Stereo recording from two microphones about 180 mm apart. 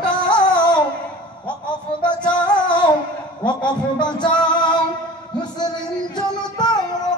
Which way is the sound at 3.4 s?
25° left (ahead or behind).